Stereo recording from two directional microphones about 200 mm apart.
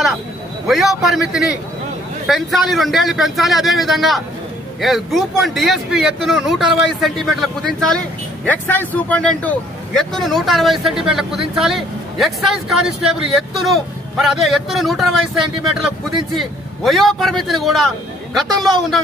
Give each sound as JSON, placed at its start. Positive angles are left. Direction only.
{"t": 0.7, "sound": "a man's voice", "side_deg": 0}